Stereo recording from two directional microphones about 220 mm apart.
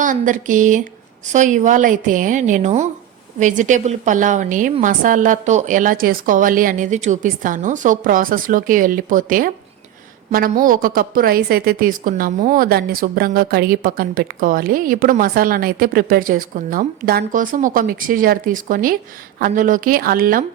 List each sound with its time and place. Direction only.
0.0 s a woman's voice: 35° right (ahead or behind)